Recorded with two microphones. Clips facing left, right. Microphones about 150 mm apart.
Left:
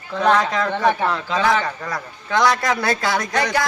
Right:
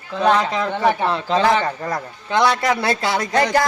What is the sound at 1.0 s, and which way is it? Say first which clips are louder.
Speech: right 2 dB; 30° right (ahead or behind).